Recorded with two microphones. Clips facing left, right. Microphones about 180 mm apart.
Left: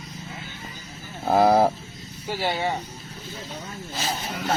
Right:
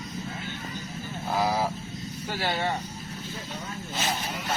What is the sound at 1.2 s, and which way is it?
Speech, 55° left (ahead or behind).